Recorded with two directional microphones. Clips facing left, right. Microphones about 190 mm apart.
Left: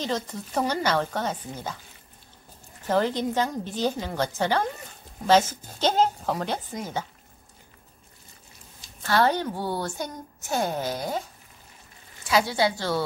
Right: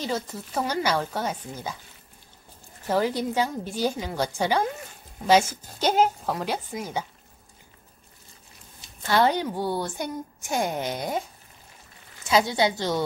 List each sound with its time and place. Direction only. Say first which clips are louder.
0.0 s a woman's voice: even; 5° right (ahead or behind)
2.9 s a woman's voice: even; 10° right (ahead or behind)
9.0 s a woman's voice: right 1 dB; 15° right (ahead or behind)
12.3 s a woman's voice: right 1 dB; 20° right (ahead or behind)